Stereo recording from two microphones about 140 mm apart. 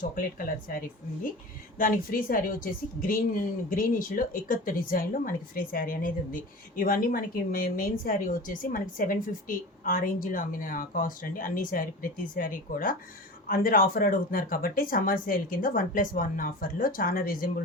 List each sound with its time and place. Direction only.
0.0 s a woman's voice: 80° left
13.5 s speech: 90° left